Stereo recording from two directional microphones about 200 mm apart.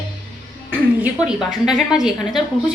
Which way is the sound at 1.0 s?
5° right (ahead or behind).